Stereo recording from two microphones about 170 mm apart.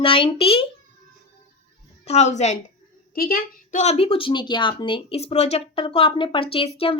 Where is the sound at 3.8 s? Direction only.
35° left (ahead or behind).